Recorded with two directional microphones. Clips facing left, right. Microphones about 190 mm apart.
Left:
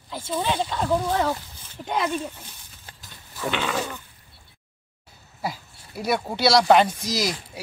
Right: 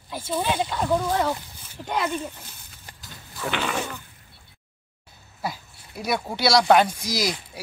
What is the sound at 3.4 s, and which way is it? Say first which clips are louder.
Speech: left 1 dB; 10° right (ahead or behind).